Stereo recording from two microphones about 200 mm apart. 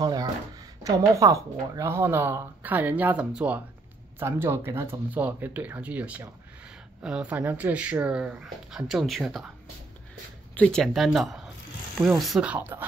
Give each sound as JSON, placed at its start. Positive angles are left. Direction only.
{"t": 0.0, "sound": "speech", "side_deg": -20}
{"t": 10.5, "sound": "speech", "side_deg": 5}